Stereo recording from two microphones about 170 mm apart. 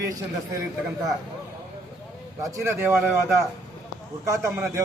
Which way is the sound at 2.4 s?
15° right (ahead or behind).